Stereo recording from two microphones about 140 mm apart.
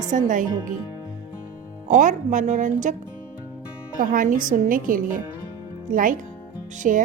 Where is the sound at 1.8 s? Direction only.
65° right (ahead or behind).